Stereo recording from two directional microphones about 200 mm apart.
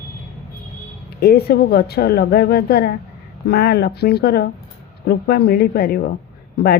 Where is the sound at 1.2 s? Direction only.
55° left (ahead or behind).